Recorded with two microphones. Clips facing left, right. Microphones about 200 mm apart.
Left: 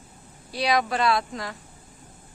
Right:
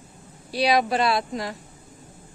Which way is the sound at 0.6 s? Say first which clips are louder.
Right 2 dB; 25° right (ahead or behind).